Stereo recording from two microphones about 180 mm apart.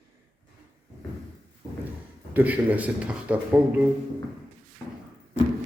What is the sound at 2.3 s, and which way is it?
Speech, 10° right (ahead or behind).